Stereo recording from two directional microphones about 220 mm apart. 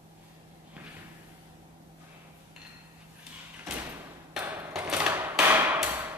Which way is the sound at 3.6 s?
10° right (ahead or behind).